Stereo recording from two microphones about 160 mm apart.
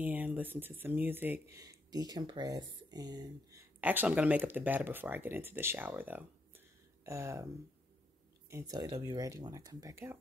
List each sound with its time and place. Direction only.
0.0 s speech: 10° right (ahead or behind)
1.6 s speech: 25° right (ahead or behind)
3.8 s speech: 10° right (ahead or behind)
8.5 s speech: 20° right (ahead or behind)